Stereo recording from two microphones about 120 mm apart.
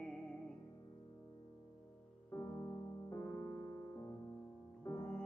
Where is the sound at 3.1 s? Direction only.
25° left (ahead or behind).